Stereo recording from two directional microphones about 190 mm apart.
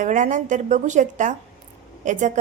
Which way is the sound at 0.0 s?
40° right (ahead or behind).